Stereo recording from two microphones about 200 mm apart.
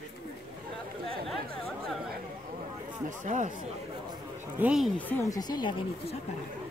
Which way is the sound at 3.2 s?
40° right (ahead or behind).